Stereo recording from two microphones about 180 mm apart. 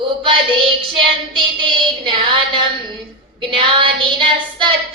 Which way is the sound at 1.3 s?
25° right (ahead or behind).